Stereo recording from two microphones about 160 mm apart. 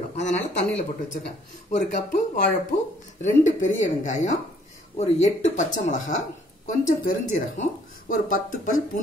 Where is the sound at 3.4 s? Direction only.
50° left (ahead or behind).